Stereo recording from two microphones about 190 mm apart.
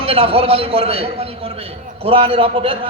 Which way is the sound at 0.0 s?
30° right (ahead or behind).